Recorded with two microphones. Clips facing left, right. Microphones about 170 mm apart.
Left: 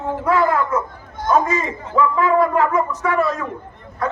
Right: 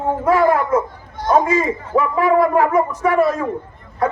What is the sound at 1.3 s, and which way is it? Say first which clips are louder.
Speech: right 3 dB; 15° right (ahead or behind).